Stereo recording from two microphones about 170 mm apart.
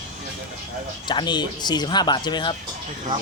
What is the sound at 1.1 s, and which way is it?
Speech, 25° left (ahead or behind).